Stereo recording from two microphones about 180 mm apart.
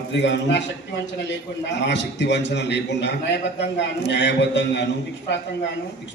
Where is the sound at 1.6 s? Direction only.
80° left.